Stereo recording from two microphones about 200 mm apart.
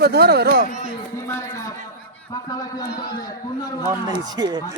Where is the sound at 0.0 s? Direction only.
55° right (ahead or behind).